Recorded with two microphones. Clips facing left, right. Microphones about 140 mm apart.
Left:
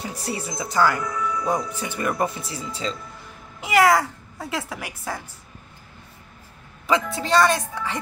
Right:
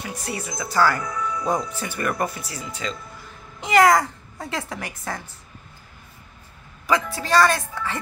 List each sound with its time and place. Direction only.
0.0 s speech: 30° left (ahead or behind)
3.6 s speech: 5° left (ahead or behind)
6.9 s speech: 20° left (ahead or behind)